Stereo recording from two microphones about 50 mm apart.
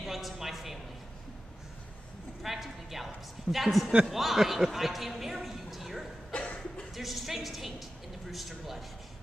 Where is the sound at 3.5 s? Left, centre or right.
Centre.